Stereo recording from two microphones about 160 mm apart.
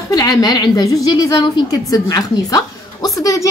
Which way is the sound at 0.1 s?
25° left (ahead or behind).